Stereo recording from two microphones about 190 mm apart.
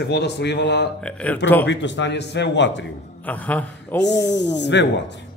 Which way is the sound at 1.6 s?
70° left (ahead or behind).